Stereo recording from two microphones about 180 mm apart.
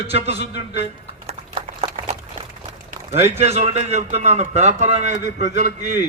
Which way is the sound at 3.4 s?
35° right (ahead or behind).